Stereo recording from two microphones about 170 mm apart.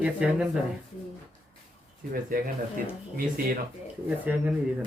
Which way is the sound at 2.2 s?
55° right (ahead or behind).